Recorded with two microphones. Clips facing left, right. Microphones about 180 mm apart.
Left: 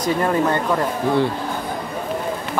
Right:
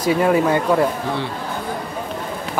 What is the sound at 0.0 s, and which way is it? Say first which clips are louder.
Speech: right 3 dB; 10° right (ahead or behind).